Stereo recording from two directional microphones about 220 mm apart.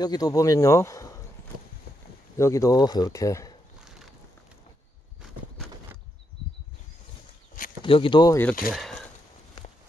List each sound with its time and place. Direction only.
0.0 s speech: 15° left (ahead or behind)
2.3 s speech: 15° left (ahead or behind)
7.8 s speech: 25° left (ahead or behind)
8.7 s a sound: centre (ahead or behind)